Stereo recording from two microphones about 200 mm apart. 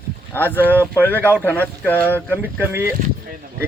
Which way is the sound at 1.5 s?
10° left (ahead or behind).